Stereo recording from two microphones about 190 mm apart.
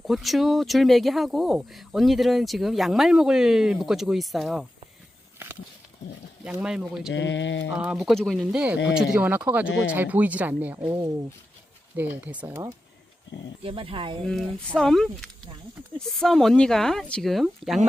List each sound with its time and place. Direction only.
0.1 s speech: centre (ahead or behind)
6.4 s speech: 5° right (ahead or behind)
7.1 s mantra: 70° left (ahead or behind)
7.7 s speech: 5° right (ahead or behind)
11.9 s speech: 10° right (ahead or behind)
13.7 s speech: 30° right (ahead or behind)
14.8 s speech: 5° left (ahead or behind)